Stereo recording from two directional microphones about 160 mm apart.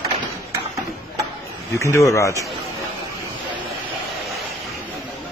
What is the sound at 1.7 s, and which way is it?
Speech, 20° left (ahead or behind).